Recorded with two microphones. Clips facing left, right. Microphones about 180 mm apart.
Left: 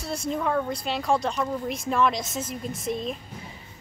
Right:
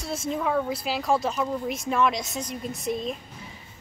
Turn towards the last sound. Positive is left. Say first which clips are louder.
# even
turn(degrees=0)  # may be behind; listen again after turning